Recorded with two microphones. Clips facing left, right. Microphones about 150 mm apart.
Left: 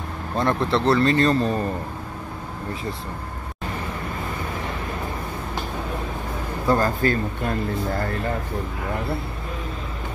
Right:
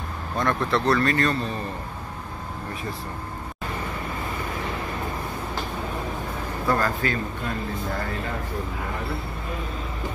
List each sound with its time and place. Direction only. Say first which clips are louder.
0.4 s speech: left 2 dB; 30° left (ahead or behind)
1.3 s a man's voice: left 7 dB; 40° left (ahead or behind)
6.7 s a man's voice: left 4 dB; 35° left (ahead or behind)